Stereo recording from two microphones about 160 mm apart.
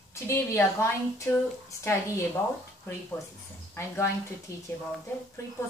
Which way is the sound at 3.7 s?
15° left (ahead or behind).